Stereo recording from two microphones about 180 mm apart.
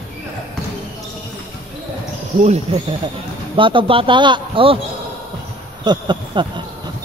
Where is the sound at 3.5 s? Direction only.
30° right (ahead or behind).